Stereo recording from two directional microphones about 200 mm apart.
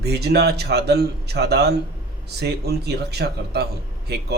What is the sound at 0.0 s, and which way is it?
Speech, 55° right (ahead or behind).